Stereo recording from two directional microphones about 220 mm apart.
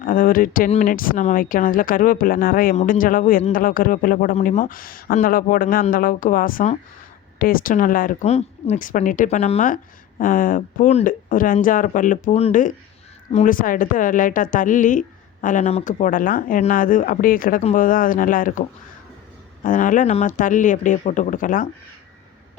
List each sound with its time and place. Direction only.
0.0 s speech: 40° left (ahead or behind)
19.6 s speech: 35° left (ahead or behind)